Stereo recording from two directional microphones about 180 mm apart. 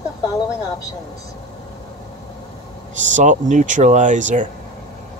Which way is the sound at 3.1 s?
45° right (ahead or behind).